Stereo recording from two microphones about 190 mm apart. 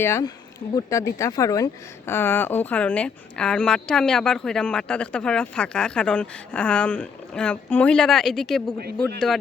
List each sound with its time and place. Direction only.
0.0 s speech: 15° left (ahead or behind)